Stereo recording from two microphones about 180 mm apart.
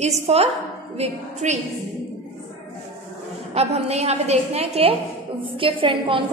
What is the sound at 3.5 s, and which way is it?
A woman's voice, 35° right (ahead or behind).